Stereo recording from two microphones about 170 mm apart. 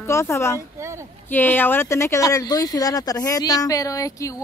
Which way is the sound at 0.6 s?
15° right (ahead or behind).